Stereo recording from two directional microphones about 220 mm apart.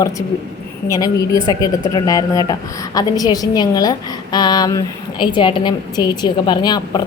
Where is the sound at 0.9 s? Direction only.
15° left (ahead or behind).